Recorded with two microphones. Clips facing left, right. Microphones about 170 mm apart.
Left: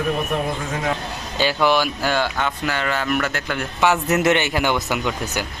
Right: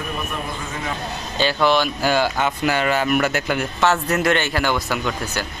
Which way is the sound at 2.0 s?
5° right (ahead or behind).